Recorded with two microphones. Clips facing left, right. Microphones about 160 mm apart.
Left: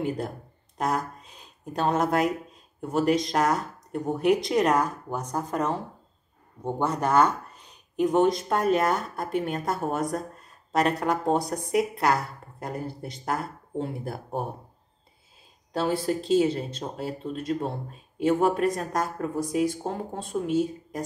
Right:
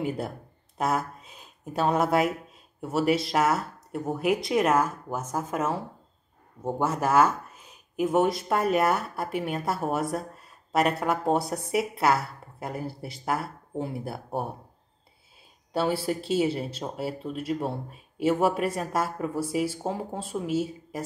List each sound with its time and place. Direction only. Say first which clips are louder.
0.7 s speech: even; 5° right (ahead or behind)
15.7 s speech: left 1 dB; 5° right (ahead or behind)